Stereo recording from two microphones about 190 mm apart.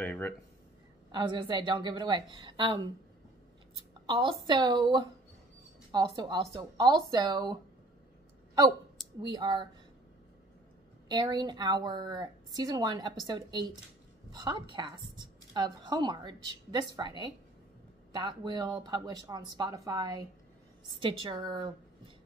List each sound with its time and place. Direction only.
0.0 s speech: 10° left (ahead or behind)
1.1 s a woman's voice: 25° right (ahead or behind)
3.7 s a sound: 25° right (ahead or behind)
4.5 s a woman's voice: 25° right (ahead or behind)
9.2 s a woman's voice: 25° right (ahead or behind)
11.1 s a woman's voice: 20° right (ahead or behind)